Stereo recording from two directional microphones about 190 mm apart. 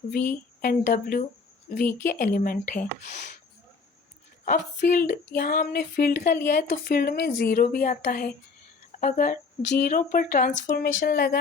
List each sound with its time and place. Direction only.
0.6 s speech: 45° left (ahead or behind)
4.4 s speech: 45° left (ahead or behind)